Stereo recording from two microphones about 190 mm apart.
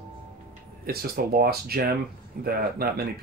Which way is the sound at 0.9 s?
55° right (ahead or behind).